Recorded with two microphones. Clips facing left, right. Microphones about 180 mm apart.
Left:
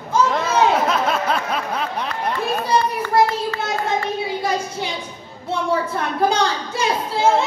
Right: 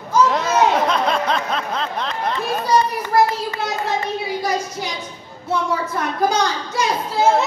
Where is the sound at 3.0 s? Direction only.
20° right (ahead or behind).